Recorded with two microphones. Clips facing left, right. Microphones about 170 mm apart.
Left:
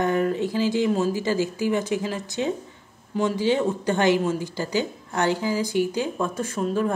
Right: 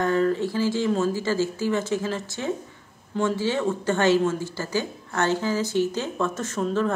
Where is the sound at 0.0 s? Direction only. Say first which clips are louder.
Even; 15° left (ahead or behind).